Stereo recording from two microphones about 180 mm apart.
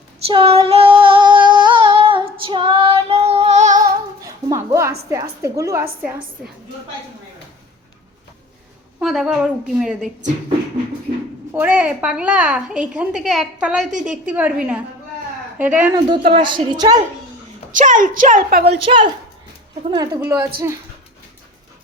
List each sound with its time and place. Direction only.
0.3 s female singing: 30° right (ahead or behind)
3.8 s music: 20° right (ahead or behind)
9.0 s a woman's voice: 5° right (ahead or behind)
11.5 s a woman's voice: 10° right (ahead or behind)
16.0 s a woman's voice: 25° right (ahead or behind)
17.7 s a woman's voice: 45° right (ahead or behind)
18.9 s a woman's voice: 25° right (ahead or behind)